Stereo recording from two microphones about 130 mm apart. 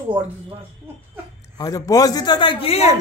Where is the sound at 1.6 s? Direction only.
25° left (ahead or behind); by 3.0 s 55° left (ahead or behind).